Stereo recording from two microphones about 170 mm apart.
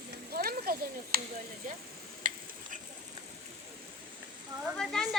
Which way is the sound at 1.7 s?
50° right (ahead or behind).